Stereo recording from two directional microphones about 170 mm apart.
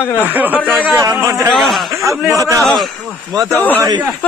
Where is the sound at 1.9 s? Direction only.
20° right (ahead or behind).